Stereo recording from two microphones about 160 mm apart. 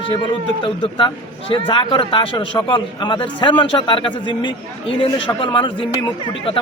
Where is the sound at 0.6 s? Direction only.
30° left (ahead or behind).